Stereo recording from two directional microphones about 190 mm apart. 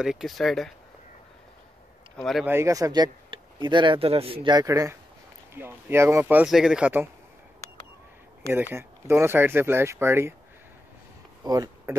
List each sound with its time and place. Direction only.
0.0 s speech: centre (ahead or behind)
2.1 s speech: centre (ahead or behind)
2.4 s speech: 15° right (ahead or behind)
8.7 s speech: 15° right (ahead or behind)
11.4 s speech: 20° right (ahead or behind)